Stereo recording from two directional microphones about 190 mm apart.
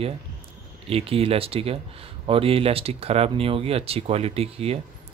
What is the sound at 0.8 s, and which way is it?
Speech, 30° right (ahead or behind).